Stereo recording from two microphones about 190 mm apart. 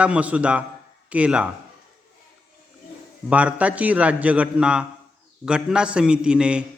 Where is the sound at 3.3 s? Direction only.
5° right (ahead or behind).